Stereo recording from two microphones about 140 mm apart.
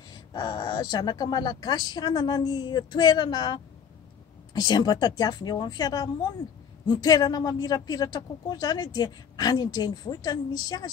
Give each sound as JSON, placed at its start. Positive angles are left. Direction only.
{"t": 0.3, "sound": "speech", "side_deg": 30}